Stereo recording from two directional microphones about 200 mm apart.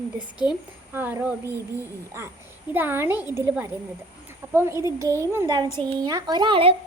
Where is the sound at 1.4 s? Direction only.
15° left (ahead or behind).